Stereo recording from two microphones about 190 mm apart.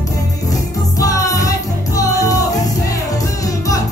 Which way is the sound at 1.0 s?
15° left (ahead or behind).